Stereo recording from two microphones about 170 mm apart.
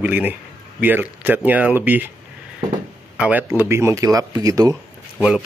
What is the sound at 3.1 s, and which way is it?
A man's voice, 10° right (ahead or behind).